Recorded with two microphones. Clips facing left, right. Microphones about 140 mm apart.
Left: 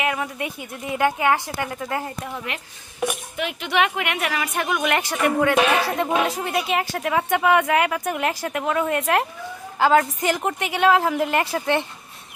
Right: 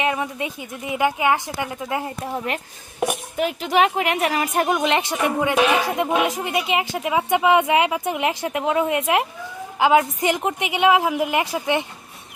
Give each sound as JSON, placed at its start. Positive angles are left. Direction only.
{"t": 0.0, "sound": "a woman's voice", "side_deg": -25}
{"t": 4.9, "sound": "a woman's voice", "side_deg": -20}